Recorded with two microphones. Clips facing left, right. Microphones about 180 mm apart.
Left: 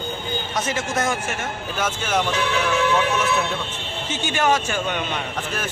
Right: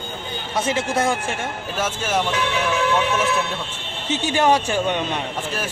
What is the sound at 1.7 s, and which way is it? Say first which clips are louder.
Speech: even; 5° right (ahead or behind).